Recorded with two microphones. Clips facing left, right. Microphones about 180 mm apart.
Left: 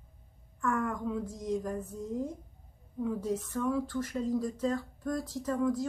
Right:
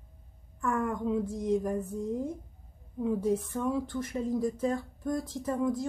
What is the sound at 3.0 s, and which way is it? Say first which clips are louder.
Speech: right 4 dB; 10° right (ahead or behind).